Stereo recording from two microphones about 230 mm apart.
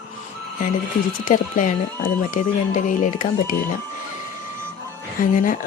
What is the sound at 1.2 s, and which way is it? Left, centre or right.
Speech, left.